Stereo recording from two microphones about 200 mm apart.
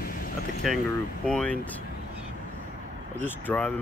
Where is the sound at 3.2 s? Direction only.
10° left (ahead or behind).